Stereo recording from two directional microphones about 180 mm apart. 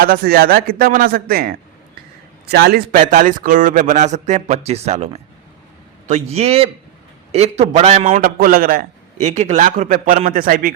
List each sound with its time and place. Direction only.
0.0 s a man's voice: 55° right (ahead or behind)
8.4 s a man's voice: 55° right (ahead or behind)
9.2 s a man's voice: 40° right (ahead or behind)